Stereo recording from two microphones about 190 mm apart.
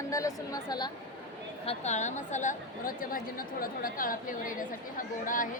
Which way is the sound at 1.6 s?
35° left (ahead or behind).